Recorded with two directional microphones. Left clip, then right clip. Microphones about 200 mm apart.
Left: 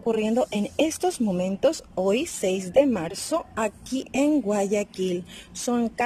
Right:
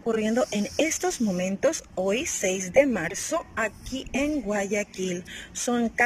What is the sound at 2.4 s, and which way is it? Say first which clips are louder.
Speech: left 1 dB; 20° left (ahead or behind).